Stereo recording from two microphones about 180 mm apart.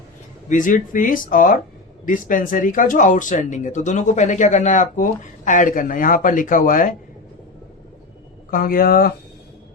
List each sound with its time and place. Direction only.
0.4 s speech: 45° left (ahead or behind)
8.4 s speech: 55° left (ahead or behind)